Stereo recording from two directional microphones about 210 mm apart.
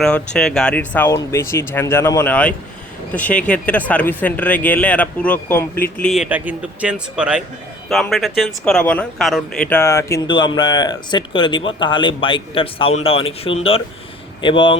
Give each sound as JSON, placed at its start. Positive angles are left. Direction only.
{"t": 0.3, "sound": "speech", "side_deg": 5}